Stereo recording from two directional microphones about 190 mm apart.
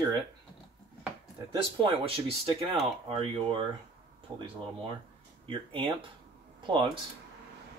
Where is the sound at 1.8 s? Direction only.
25° right (ahead or behind).